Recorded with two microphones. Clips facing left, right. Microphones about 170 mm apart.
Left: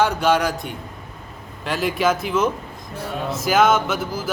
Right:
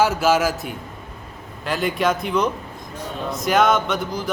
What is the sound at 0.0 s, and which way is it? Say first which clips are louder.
Speech: right 1 dB; 5° right (ahead or behind).